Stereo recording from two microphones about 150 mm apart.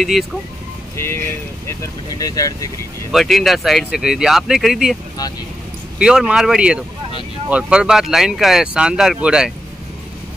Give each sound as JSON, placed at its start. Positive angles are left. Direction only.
{"t": 0.1, "sound": "speech", "side_deg": 0}
{"t": 0.9, "sound": "speech", "side_deg": 15}
{"t": 3.1, "sound": "speech", "side_deg": 0}
{"t": 5.9, "sound": "speech", "side_deg": -5}